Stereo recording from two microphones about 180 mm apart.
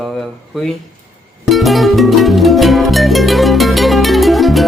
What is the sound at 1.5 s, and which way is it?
Music, centre (ahead or behind).